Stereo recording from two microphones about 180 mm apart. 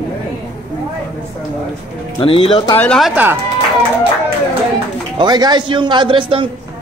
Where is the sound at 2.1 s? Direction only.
30° left (ahead or behind).